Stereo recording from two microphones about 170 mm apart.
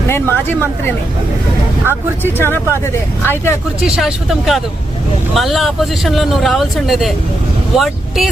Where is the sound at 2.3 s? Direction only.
10° left (ahead or behind).